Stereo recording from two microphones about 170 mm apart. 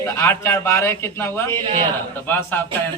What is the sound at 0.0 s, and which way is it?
A man's voice, 15° left (ahead or behind).